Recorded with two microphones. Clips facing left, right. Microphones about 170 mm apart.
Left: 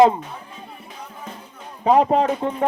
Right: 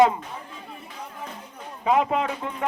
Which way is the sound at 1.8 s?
35° left (ahead or behind).